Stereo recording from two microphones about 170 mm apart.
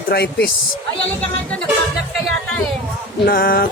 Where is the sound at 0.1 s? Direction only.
70° left (ahead or behind).